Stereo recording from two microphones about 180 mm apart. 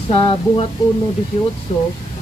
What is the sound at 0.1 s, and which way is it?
Speech, 30° left (ahead or behind).